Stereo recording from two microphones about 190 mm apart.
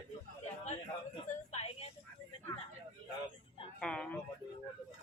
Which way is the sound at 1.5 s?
35° left (ahead or behind).